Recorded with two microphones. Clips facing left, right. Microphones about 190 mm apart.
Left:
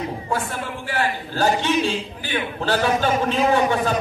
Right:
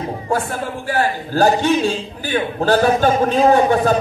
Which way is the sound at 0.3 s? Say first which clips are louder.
Right 7 dB; 40° right (ahead or behind).